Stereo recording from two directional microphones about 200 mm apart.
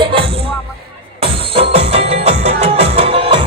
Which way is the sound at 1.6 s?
30° right (ahead or behind).